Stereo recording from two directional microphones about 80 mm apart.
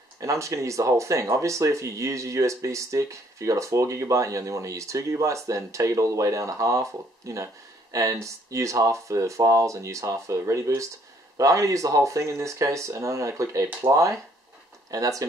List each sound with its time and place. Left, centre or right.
0.2 s speech: right